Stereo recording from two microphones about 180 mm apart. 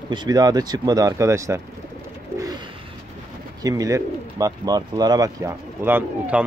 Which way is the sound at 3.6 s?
20° right (ahead or behind).